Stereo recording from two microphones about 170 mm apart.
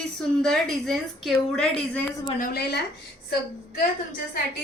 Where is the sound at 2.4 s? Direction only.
60° left (ahead or behind).